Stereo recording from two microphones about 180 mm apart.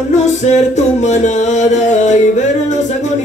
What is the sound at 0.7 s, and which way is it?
Music, 40° left (ahead or behind).